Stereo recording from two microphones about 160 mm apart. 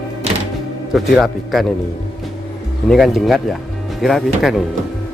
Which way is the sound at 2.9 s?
Centre (ahead or behind).